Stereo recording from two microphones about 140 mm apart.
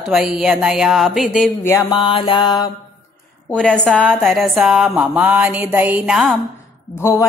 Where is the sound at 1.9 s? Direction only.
35° left (ahead or behind).